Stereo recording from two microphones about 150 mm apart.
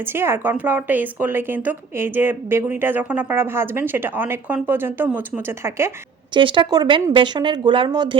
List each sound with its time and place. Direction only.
0.0 s a woman's voice: 15° right (ahead or behind)
6.3 s speech: 35° right (ahead or behind)